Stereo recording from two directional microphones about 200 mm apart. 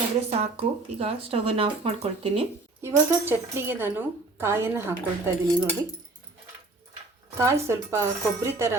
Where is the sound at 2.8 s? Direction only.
10° right (ahead or behind).